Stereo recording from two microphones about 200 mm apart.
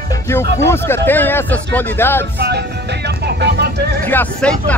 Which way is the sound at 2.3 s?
55° right (ahead or behind).